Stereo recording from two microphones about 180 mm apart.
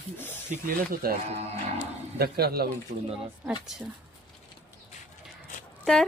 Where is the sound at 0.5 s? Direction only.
45° right (ahead or behind).